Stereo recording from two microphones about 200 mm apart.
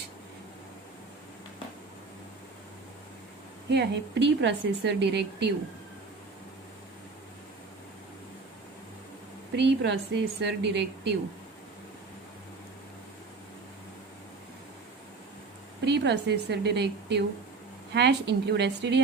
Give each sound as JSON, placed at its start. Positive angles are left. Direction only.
{"t": 3.7, "sound": "a woman's voice", "side_deg": -60}
{"t": 9.6, "sound": "a woman's voice", "side_deg": -60}
{"t": 10.1, "sound": "a woman's voice", "side_deg": -70}
{"t": 10.4, "sound": "a woman's voice", "side_deg": -55}
{"t": 15.8, "sound": "a woman's voice", "side_deg": -60}